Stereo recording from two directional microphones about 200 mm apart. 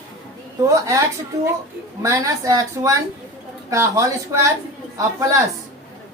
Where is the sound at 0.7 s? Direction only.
15° right (ahead or behind).